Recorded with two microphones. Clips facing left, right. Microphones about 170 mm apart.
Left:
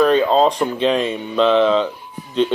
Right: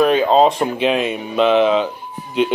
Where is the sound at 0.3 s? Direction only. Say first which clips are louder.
Right 2 dB; 15° right (ahead or behind).